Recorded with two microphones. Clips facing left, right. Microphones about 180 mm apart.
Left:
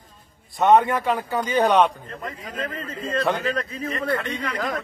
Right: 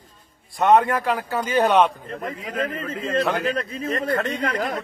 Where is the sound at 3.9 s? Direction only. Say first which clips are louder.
Right 2 dB; 45° right (ahead or behind).